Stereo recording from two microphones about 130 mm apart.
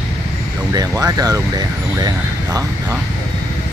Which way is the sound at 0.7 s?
30° right (ahead or behind).